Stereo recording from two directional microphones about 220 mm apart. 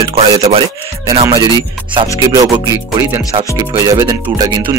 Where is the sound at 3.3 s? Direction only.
20° right (ahead or behind).